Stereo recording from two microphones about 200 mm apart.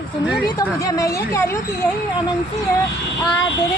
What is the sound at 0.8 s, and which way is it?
Speech, 15° left (ahead or behind).